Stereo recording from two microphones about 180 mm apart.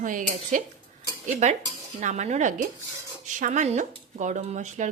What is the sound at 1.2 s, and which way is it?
Dishes, 40° right (ahead or behind).